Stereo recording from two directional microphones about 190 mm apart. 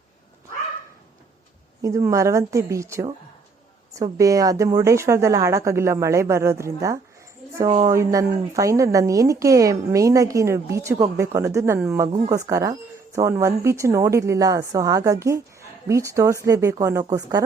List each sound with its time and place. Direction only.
1.8 s a woman's voice: 15° right (ahead or behind)